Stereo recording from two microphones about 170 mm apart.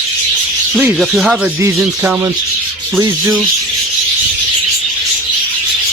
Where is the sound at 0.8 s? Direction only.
5° right (ahead or behind).